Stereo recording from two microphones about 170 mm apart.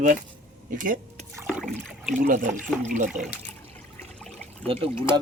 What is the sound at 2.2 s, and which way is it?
Speech, 50° right (ahead or behind).